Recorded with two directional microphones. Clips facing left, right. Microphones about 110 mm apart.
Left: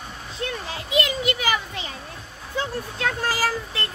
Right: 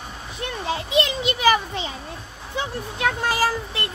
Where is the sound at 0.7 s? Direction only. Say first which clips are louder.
Right 4 dB; 25° right (ahead or behind).